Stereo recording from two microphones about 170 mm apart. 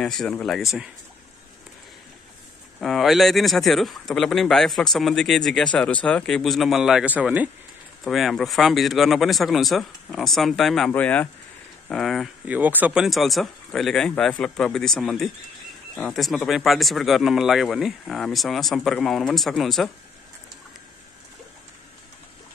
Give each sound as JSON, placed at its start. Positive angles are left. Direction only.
{"t": 0.0, "sound": "a man's voice", "side_deg": 5}
{"t": 2.8, "sound": "a man's voice", "side_deg": 0}